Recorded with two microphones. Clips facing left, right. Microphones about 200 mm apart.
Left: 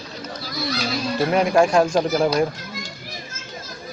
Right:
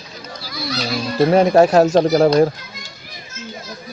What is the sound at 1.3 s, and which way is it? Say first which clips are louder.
Speech: right 5 dB; 35° right (ahead or behind).